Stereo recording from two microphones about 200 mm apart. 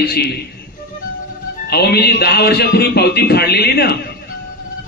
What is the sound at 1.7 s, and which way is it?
A man's voice, 55° left (ahead or behind).